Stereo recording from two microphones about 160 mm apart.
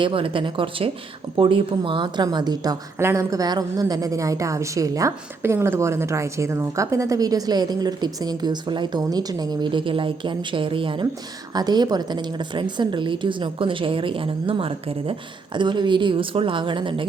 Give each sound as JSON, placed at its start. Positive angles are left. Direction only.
{"t": 0.0, "sound": "a woman's voice", "side_deg": -30}